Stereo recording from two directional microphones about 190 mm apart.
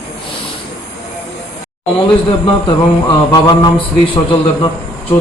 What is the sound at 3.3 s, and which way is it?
Speech, 25° left (ahead or behind).